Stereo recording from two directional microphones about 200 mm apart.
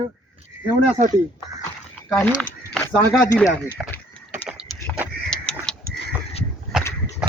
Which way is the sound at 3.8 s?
5° right (ahead or behind).